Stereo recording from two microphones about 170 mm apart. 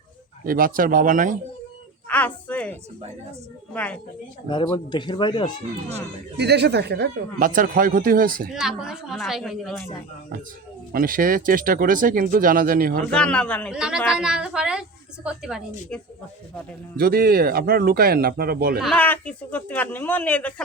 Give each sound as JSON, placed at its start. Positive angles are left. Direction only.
{"t": 0.4, "sound": "speech", "side_deg": -55}
{"t": 2.0, "sound": "a woman's voice", "side_deg": 10}
{"t": 4.9, "sound": "speech", "side_deg": 25}
{"t": 6.3, "sound": "speech", "side_deg": -75}
{"t": 8.5, "sound": "a woman's voice", "side_deg": -5}
{"t": 10.9, "sound": "speech", "side_deg": -55}
{"t": 13.1, "sound": "a woman's voice", "side_deg": 5}
{"t": 13.7, "sound": "a woman's voice", "side_deg": -5}
{"t": 17.0, "sound": "speech", "side_deg": -65}
{"t": 18.8, "sound": "speech", "side_deg": 5}